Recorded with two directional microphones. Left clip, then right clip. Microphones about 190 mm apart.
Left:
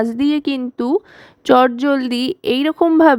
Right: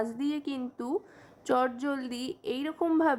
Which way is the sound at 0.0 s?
40° left (ahead or behind).